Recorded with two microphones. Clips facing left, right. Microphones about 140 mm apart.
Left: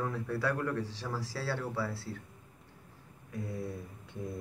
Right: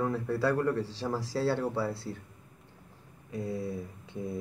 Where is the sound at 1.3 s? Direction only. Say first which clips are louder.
Right 10 dB; 15° right (ahead or behind).